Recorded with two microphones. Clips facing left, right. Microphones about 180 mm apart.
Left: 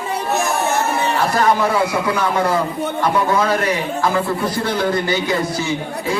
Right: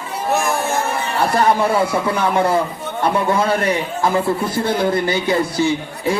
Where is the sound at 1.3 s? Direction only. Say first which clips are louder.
Right 2 dB; 30° right (ahead or behind).